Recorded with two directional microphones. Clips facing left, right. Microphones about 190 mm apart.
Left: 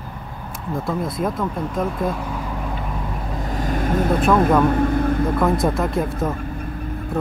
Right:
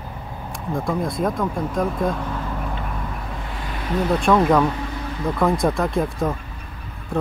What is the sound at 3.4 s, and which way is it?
Vehicle, 40° left (ahead or behind).